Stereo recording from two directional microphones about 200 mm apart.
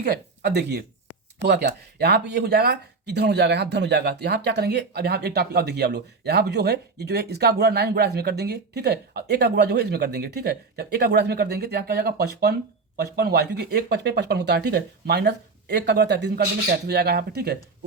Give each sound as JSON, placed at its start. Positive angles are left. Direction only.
{"t": 0.0, "sound": "speech", "side_deg": -55}